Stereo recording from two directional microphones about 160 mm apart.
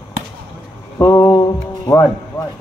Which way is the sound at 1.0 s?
20° left (ahead or behind).